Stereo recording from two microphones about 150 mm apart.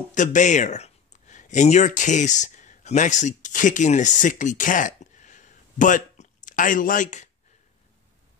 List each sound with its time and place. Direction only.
0.1 s speech: 55° left (ahead or behind)